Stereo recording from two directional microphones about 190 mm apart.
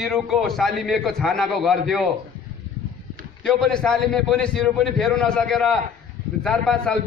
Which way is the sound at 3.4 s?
Centre (ahead or behind).